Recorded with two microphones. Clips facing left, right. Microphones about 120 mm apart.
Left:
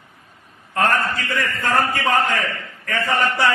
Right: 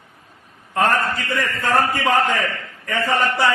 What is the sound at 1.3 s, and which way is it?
A man's voice, 20° right (ahead or behind).